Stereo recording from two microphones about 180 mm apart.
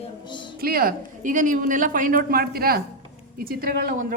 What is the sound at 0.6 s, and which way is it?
A woman's voice, 55° right (ahead or behind).